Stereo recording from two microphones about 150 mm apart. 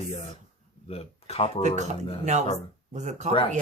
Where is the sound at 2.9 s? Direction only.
50° right (ahead or behind).